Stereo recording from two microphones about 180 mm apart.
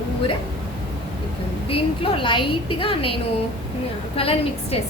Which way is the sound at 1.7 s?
30° left (ahead or behind).